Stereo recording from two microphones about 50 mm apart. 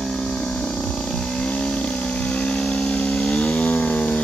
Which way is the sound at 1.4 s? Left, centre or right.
Left.